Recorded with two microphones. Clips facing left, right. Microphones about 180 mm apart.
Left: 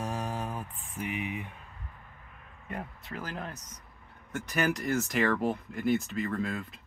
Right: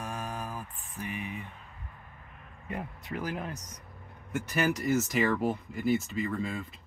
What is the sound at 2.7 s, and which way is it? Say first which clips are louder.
Speech: right 2 dB; 10° right (ahead or behind).